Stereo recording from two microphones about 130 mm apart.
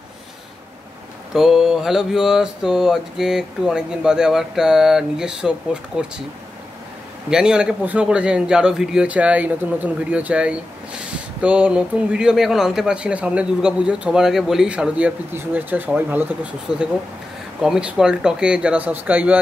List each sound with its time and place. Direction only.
1.3 s mantra: 5° right (ahead or behind)
7.2 s a man's voice: 5° right (ahead or behind)
16.7 s mantra: 5° right (ahead or behind)
17.6 s a man's voice: 5° right (ahead or behind)